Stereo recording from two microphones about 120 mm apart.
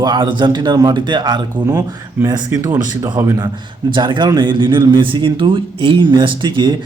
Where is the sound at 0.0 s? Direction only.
40° right (ahead or behind).